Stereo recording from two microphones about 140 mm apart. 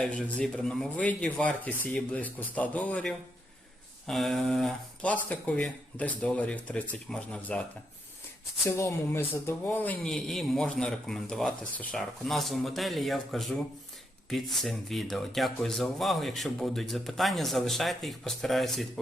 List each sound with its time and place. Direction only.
0.0 s speech: 5° left (ahead or behind)
8.6 s speech: 20° left (ahead or behind)
10.1 s speech: centre (ahead or behind)